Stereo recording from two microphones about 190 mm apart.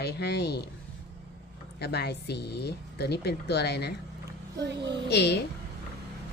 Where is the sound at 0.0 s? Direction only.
60° left (ahead or behind).